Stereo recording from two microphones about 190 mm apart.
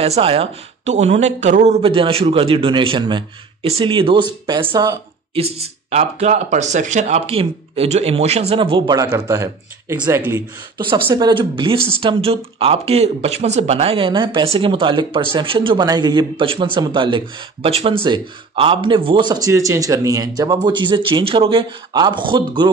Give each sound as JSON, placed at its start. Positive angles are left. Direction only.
{"t": 0.0, "sound": "speech", "side_deg": -30}
{"t": 5.3, "sound": "speech", "side_deg": -30}